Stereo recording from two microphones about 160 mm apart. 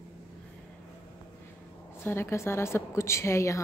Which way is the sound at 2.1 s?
15° left (ahead or behind).